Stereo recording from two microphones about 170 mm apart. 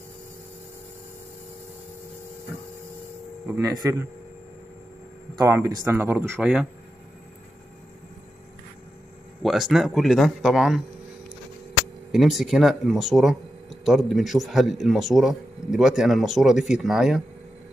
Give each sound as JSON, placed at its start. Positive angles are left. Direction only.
{"t": 3.4, "sound": "speech", "side_deg": -15}
{"t": 5.3, "sound": "speech", "side_deg": -20}
{"t": 9.4, "sound": "speech", "side_deg": 0}
{"t": 12.1, "sound": "speech", "side_deg": 0}